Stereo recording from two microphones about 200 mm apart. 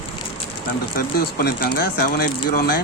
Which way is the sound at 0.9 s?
50° left (ahead or behind).